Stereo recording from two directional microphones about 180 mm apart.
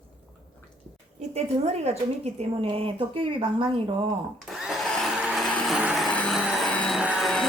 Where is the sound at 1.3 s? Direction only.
35° right (ahead or behind).